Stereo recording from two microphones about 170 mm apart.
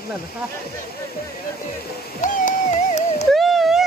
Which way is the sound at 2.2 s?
45° left (ahead or behind).